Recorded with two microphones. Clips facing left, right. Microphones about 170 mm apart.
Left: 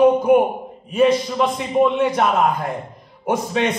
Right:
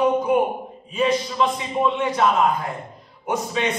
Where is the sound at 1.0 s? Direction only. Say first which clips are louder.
Left 4 dB; 60° left (ahead or behind).